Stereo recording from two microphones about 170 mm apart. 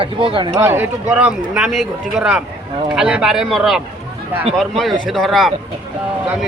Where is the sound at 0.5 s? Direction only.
15° right (ahead or behind).